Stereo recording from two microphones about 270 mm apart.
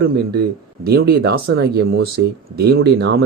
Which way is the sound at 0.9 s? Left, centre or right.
Right.